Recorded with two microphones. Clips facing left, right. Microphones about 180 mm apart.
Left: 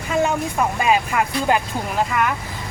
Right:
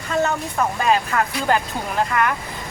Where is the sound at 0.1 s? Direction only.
10° left (ahead or behind).